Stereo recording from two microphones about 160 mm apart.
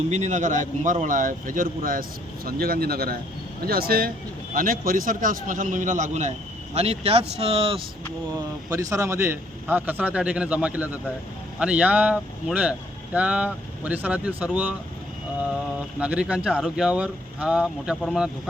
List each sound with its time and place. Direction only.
0.1 s speech: 45° right (ahead or behind)
8.7 s a man's voice: 20° right (ahead or behind)
16.0 s speech: 5° right (ahead or behind)